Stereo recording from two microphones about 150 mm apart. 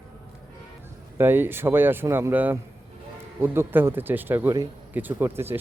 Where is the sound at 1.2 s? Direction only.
15° right (ahead or behind).